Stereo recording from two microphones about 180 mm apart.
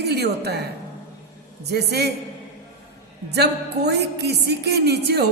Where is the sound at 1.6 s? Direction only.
65° right (ahead or behind).